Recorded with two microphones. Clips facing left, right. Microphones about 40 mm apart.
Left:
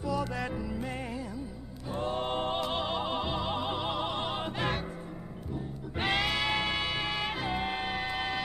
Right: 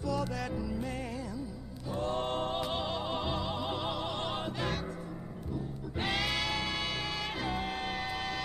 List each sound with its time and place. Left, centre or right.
0.0 s music: centre
2.1 s a capella: centre
2.6 s music: centre
3.4 s music: left
4.5 s music: left
5.9 s music: centre